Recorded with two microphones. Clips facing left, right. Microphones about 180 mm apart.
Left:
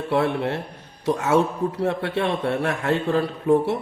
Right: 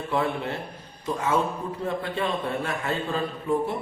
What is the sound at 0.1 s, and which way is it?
Speech, 75° left (ahead or behind).